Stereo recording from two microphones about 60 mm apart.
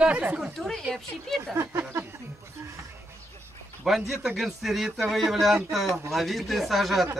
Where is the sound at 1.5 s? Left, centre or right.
Right.